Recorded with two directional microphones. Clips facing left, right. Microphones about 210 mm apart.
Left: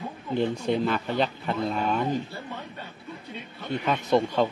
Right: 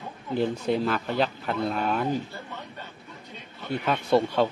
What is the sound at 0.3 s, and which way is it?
Speech, 5° right (ahead or behind).